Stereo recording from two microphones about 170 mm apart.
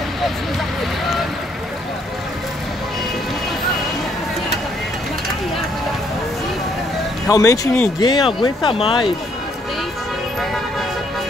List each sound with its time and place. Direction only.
7.2 s speech: 20° left (ahead or behind)